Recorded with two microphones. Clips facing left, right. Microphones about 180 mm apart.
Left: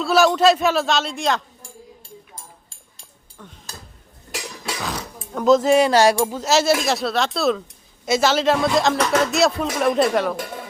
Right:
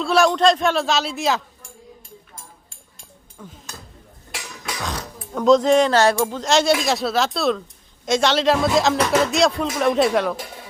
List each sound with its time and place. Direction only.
0.0 s speech: 5° left (ahead or behind)
3.4 s speech: 5° right (ahead or behind)
4.3 s dishes: 40° left (ahead or behind)
4.8 s speech: centre (ahead or behind)